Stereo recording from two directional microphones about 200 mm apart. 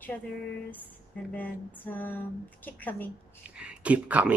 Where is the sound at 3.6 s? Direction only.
5° right (ahead or behind).